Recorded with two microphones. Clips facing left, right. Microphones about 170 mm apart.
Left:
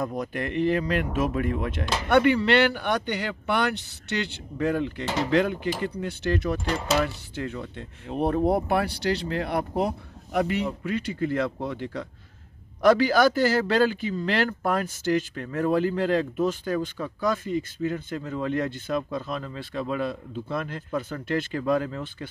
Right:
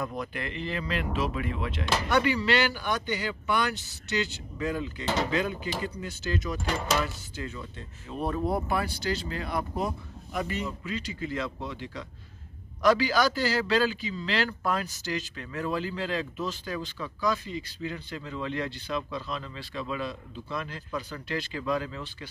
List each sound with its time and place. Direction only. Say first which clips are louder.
0.0 s a man's voice: left 5 dB; 40° left (ahead or behind)